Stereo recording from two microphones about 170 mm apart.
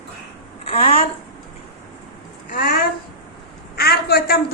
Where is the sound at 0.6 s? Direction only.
35° left (ahead or behind).